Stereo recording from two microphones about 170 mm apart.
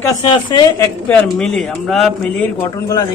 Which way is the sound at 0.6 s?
15° left (ahead or behind).